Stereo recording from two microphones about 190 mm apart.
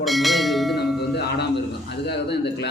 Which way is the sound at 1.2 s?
60° left (ahead or behind).